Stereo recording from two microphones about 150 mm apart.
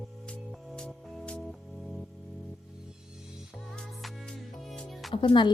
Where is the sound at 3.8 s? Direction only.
5° left (ahead or behind).